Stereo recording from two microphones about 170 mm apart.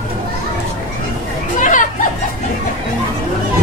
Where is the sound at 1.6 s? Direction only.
50° left (ahead or behind).